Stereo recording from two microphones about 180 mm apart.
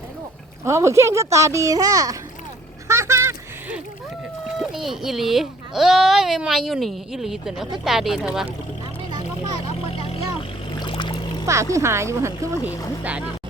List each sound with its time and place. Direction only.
0.6 s speech: 15° right (ahead or behind)
2.8 s a sound: 15° right (ahead or behind)
4.6 s speech: centre (ahead or behind)
9.9 s vehicle: 30° left (ahead or behind)
11.4 s speech: 15° right (ahead or behind)